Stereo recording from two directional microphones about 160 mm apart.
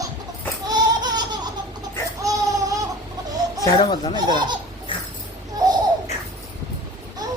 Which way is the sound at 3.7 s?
30° left (ahead or behind).